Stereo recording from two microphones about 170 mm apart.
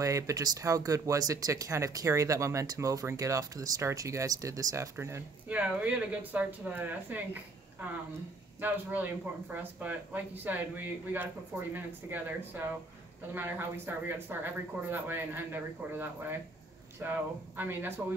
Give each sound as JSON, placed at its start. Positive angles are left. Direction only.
{"t": 0.0, "sound": "speech", "side_deg": -20}
{"t": 8.5, "sound": "speech", "side_deg": -10}